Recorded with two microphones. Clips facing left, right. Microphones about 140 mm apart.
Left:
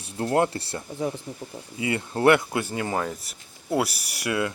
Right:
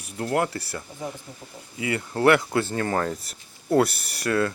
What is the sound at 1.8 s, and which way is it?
Speech, 25° left (ahead or behind).